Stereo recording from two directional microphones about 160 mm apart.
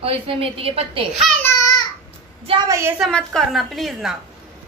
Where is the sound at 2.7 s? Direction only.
15° right (ahead or behind).